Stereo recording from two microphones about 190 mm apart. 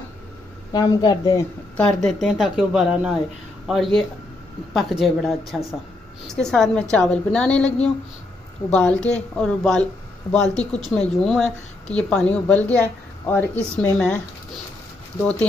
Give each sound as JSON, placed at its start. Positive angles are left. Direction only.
{"t": 0.7, "sound": "a woman's voice", "side_deg": 20}
{"t": 1.8, "sound": "speech", "side_deg": 5}